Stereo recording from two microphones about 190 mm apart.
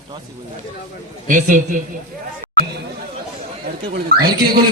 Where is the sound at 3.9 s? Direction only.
55° right (ahead or behind).